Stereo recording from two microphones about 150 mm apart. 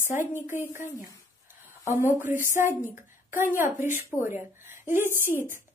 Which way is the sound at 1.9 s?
15° right (ahead or behind).